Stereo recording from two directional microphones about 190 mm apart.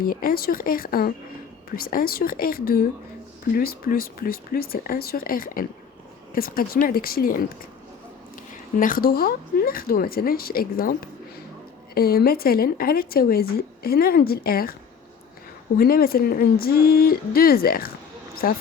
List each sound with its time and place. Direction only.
0.0 s speech: 50° left (ahead or behind)
8.8 s speech: 50° left (ahead or behind)
15.8 s speech: 50° left (ahead or behind)